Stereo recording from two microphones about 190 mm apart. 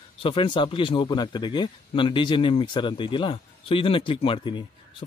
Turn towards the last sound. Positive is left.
turn(degrees=25)  # may be behind; listen again after turning